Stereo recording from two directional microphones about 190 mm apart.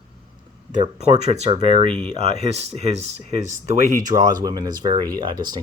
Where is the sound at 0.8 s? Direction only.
35° right (ahead or behind).